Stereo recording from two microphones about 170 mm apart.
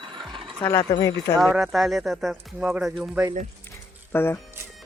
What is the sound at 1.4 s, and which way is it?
Speech, 5° right (ahead or behind).